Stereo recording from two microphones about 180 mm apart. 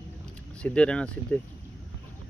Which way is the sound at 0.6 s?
5° left (ahead or behind).